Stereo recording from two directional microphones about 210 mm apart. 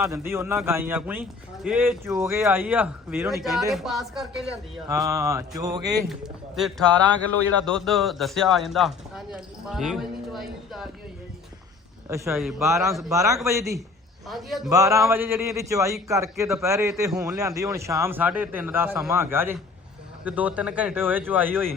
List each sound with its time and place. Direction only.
0.1 s a man's voice: 10° right (ahead or behind)
4.9 s a man's voice: 15° right (ahead or behind)
6.1 s a man's voice: centre (ahead or behind)
12.0 s a man's voice: 15° right (ahead or behind)
14.3 s speech: centre (ahead or behind)
14.7 s a man's voice: 15° right (ahead or behind)